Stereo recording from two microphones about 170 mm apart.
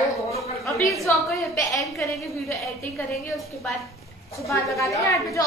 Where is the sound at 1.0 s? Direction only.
20° left (ahead or behind).